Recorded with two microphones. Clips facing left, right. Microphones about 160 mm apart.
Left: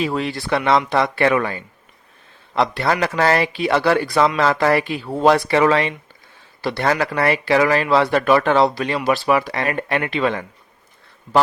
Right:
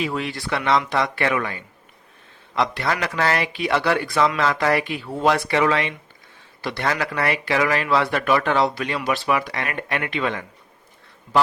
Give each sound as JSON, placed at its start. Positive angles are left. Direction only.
{"t": 0.0, "sound": "speech", "side_deg": 35}